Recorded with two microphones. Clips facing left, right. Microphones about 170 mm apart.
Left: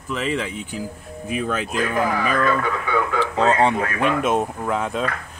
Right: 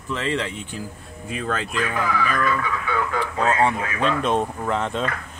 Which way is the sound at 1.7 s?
45° left (ahead or behind).